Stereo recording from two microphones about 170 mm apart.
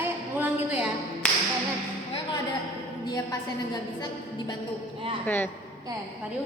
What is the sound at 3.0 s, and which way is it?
A woman's voice, 20° left (ahead or behind).